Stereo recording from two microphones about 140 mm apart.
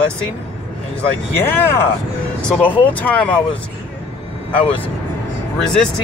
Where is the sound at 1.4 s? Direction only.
15° left (ahead or behind).